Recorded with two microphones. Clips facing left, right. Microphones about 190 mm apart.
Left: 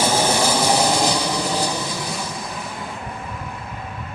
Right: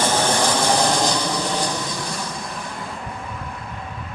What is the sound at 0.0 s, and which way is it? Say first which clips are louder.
Vehicle: left 1 dB; 10° left (ahead or behind).